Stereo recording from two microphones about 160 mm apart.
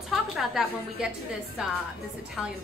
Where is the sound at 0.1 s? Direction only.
Centre (ahead or behind).